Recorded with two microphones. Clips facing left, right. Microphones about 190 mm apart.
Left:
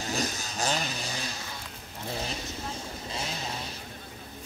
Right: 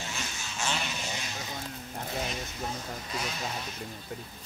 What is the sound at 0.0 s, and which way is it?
Vehicle, 40° left (ahead or behind).